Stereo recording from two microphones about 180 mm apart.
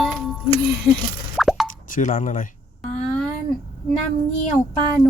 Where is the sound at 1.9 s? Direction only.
45° left (ahead or behind).